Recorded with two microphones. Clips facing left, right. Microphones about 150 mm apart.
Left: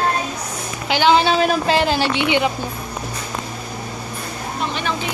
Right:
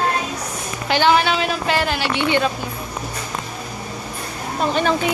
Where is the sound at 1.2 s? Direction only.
40° left (ahead or behind).